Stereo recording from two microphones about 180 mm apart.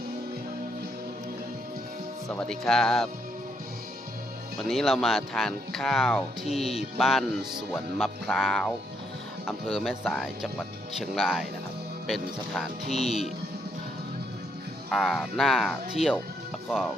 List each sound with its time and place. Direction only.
2.3 s speech: 5° left (ahead or behind)
4.6 s speech: centre (ahead or behind)
12.9 s music: 35° left (ahead or behind)
14.8 s speech: centre (ahead or behind)